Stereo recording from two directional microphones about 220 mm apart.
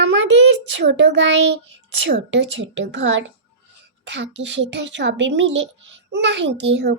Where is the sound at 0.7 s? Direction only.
55° right (ahead or behind).